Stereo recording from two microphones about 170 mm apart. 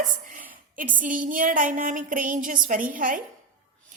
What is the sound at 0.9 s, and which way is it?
A woman's voice, 50° right (ahead or behind).